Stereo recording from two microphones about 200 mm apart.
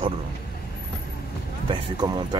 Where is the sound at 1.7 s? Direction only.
20° right (ahead or behind).